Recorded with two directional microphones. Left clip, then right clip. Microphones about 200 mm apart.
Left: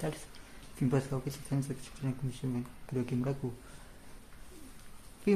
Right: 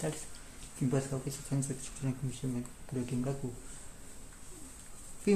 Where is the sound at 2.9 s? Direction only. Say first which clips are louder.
Left 3 dB; 30° left (ahead or behind).